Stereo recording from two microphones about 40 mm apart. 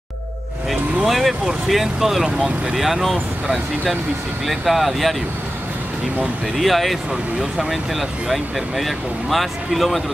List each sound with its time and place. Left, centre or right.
1.0 s speech: centre
2.3 s speech: right
2.7 s speech: centre
6.6 s speech: centre
7.1 s speech: centre
7.7 s speech: centre